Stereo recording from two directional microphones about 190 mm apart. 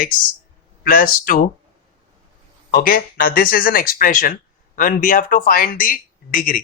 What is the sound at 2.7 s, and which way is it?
Speech, 50° left (ahead or behind).